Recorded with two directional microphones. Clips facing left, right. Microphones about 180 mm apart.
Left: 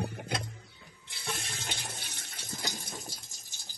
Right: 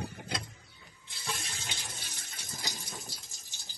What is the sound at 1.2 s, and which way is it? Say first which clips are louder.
Water tap: left 2 dB; 60° left (ahead or behind).